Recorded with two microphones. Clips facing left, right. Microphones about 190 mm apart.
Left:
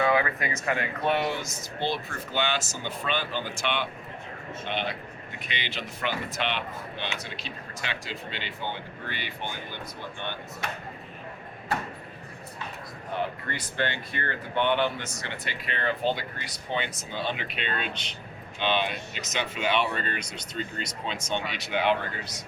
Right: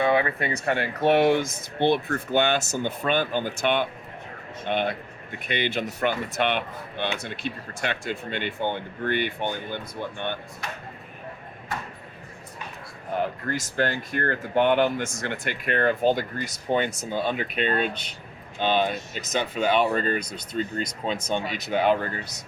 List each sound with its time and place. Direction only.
0.0 s speech: 25° right (ahead or behind)
1.2 s speech: 55° right (ahead or behind)
13.1 s speech: 45° right (ahead or behind)